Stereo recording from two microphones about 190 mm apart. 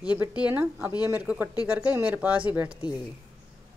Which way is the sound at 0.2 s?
10° right (ahead or behind).